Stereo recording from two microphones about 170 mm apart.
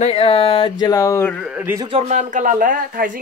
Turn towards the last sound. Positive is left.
turn(degrees=-55)  # may be behind; listen again after turning